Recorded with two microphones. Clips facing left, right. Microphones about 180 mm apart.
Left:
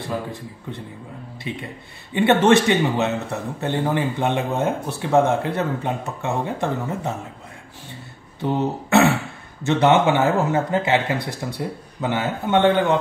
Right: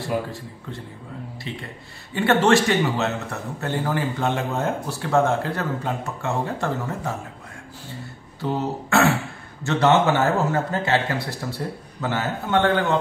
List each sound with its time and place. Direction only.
1.5 s a man's voice: 15° left (ahead or behind)
8.4 s a man's voice: 20° left (ahead or behind)